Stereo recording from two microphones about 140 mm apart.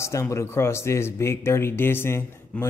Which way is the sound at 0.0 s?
20° left (ahead or behind).